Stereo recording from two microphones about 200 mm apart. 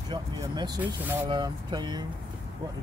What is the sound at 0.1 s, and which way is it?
Speech, 20° right (ahead or behind).